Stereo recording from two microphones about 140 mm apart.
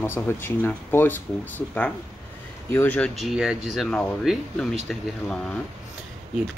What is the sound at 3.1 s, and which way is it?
Speech, centre (ahead or behind).